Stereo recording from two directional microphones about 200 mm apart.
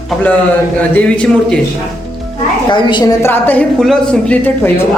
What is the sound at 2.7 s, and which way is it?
Speech, 25° left (ahead or behind).